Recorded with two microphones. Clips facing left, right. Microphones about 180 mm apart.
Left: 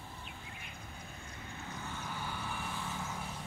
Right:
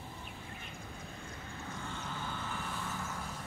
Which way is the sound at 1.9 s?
10° left (ahead or behind).